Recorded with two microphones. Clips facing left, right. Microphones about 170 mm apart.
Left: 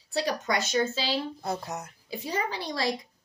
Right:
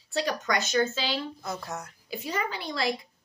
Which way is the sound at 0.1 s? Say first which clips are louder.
Even; 30° left (ahead or behind).